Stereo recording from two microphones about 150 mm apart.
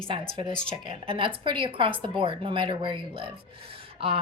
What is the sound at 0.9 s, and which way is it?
A woman's voice, 35° right (ahead or behind).